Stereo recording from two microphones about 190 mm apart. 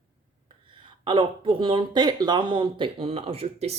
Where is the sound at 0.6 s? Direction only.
25° right (ahead or behind).